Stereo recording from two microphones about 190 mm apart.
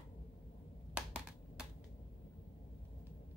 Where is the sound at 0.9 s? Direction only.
5° right (ahead or behind).